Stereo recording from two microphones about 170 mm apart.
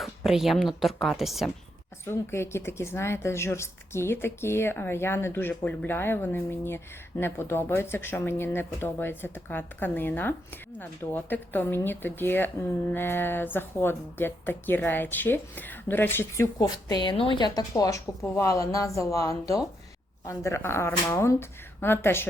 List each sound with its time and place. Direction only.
0.3 s speech: centre (ahead or behind)
2.0 s speech: 15° left (ahead or behind)
16.4 s a woman's voice: 20° left (ahead or behind)